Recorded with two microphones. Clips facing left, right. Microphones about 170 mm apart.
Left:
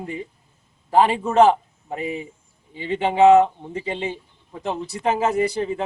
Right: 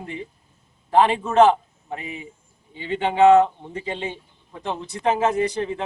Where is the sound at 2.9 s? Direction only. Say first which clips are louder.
Left 1 dB; 5° left (ahead or behind).